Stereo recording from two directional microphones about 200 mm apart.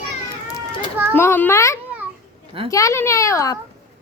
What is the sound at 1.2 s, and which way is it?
Speech, 10° left (ahead or behind).